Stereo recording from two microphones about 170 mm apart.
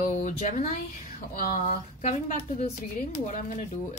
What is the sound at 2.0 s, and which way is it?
Speech, 45° left (ahead or behind).